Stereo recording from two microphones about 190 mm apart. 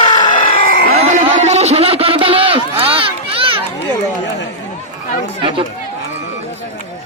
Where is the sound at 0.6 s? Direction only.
45° left (ahead or behind).